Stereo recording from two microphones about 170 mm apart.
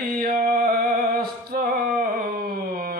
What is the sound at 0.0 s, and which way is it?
Music, 60° right (ahead or behind).